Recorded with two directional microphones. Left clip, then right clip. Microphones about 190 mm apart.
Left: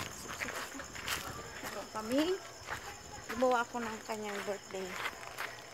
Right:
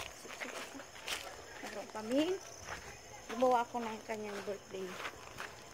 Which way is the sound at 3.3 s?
5° left (ahead or behind).